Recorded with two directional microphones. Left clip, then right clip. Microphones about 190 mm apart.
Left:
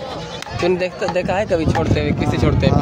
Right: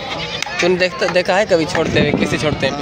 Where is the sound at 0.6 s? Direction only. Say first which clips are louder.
Right 3 dB; 5° right (ahead or behind).